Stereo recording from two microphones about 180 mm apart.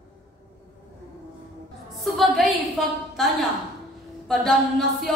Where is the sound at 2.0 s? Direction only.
Centre (ahead or behind).